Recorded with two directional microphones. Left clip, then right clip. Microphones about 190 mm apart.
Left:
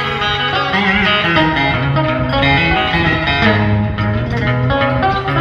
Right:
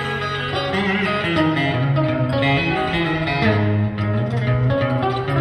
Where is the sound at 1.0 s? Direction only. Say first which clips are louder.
Left 7 dB; 15° left (ahead or behind).